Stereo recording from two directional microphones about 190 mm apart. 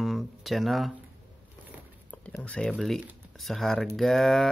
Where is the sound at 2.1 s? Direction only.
5° left (ahead or behind).